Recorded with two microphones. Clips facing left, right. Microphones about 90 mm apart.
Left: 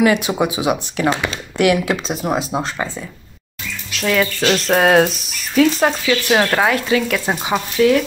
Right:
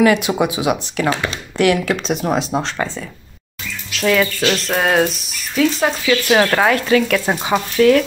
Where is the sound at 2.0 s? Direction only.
5° left (ahead or behind).